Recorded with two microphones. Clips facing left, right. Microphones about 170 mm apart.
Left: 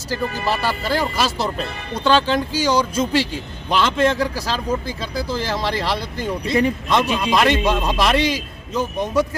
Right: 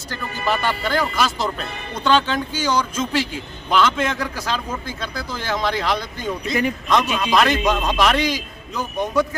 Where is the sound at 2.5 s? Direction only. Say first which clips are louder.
Left 3 dB; 10° left (ahead or behind).